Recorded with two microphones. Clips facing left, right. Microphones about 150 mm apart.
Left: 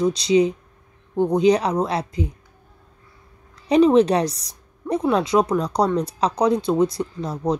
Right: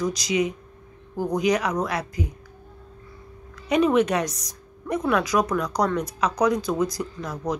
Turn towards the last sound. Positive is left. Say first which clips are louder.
# left 5 dB
turn(degrees=30)  # may be behind; listen again after turning